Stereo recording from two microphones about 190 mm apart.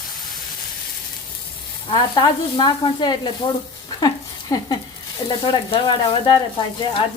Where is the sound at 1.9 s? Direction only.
25° left (ahead or behind).